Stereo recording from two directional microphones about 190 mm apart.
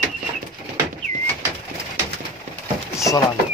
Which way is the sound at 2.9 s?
15° left (ahead or behind).